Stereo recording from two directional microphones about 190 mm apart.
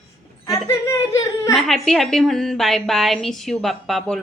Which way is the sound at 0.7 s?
15° left (ahead or behind).